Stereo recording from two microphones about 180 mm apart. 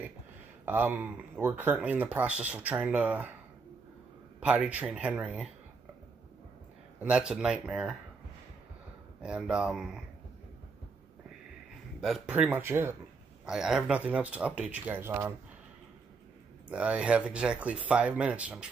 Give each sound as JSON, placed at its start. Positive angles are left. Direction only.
{"t": 0.7, "sound": "speech", "side_deg": -10}
{"t": 4.4, "sound": "speech", "side_deg": -5}
{"t": 7.0, "sound": "speech", "side_deg": -5}
{"t": 9.2, "sound": "speech", "side_deg": -5}
{"t": 12.0, "sound": "speech", "side_deg": -5}
{"t": 16.6, "sound": "speech", "side_deg": -5}